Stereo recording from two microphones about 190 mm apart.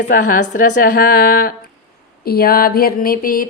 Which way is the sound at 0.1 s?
45° left (ahead or behind).